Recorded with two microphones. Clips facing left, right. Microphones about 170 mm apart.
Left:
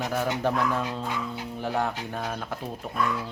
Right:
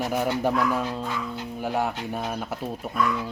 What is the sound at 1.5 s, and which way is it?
Speech, 5° right (ahead or behind).